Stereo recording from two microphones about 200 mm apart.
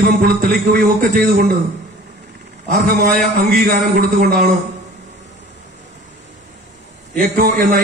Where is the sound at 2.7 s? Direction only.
45° right (ahead or behind).